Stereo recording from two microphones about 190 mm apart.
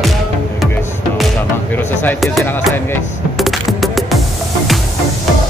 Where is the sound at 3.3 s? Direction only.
Centre (ahead or behind).